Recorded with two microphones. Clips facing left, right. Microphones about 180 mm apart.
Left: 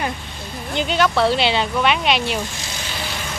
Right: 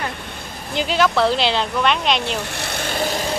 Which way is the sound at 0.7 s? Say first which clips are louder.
Even; centre (ahead or behind).